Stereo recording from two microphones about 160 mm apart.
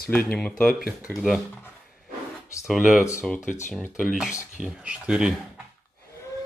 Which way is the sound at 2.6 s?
Centre (ahead or behind).